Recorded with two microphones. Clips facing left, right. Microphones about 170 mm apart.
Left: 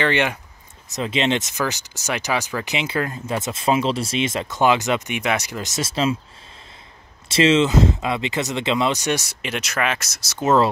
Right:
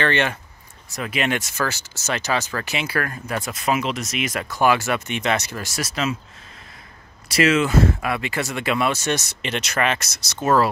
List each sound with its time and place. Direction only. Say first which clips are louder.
0.0 s speech: left 1 dB; 15° left (ahead or behind)
7.2 s speech: left 2 dB; 25° left (ahead or behind); by 10.4 s 5° left (ahead or behind)
10.4 s speech: left 1 dB; 20° left (ahead or behind)